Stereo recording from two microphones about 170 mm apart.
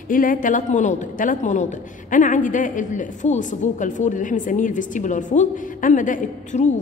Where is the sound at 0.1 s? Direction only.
55° left (ahead or behind).